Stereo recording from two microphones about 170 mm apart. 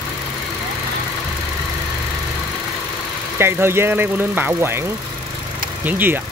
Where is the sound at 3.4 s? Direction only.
15° right (ahead or behind).